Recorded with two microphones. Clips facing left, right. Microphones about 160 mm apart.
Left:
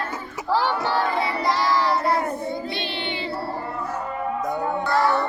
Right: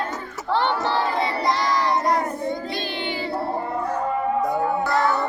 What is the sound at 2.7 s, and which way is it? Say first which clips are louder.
Child singing: right 1 dB; 25° left (ahead or behind).